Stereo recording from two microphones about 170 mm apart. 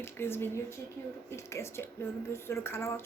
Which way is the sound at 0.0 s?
15° left (ahead or behind).